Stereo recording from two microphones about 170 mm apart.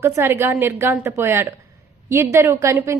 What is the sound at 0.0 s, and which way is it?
A woman's voice, 15° right (ahead or behind).